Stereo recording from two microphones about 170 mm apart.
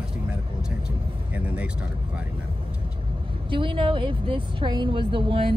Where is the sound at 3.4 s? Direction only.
30° right (ahead or behind).